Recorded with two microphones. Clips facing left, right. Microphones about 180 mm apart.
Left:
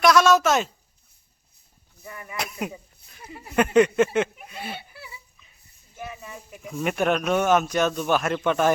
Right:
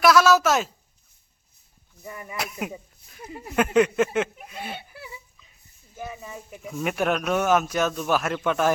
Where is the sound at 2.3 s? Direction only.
Centre (ahead or behind).